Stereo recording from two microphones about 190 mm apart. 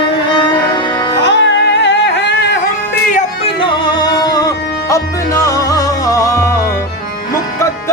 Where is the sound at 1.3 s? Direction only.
70° left (ahead or behind).